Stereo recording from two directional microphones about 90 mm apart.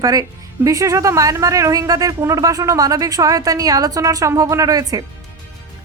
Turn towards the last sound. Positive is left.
turn(degrees=-45)  # may be behind; listen again after turning